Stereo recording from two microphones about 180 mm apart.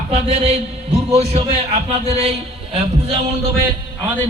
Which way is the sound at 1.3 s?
35° right (ahead or behind).